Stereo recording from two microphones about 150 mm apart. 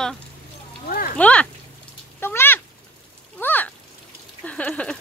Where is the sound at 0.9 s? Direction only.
75° left (ahead or behind).